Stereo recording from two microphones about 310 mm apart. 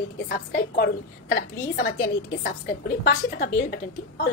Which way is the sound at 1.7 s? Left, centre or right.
Left.